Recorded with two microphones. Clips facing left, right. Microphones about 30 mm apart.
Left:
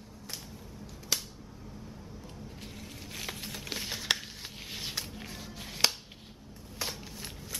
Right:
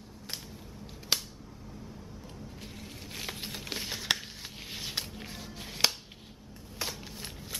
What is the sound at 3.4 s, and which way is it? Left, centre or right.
Music, centre.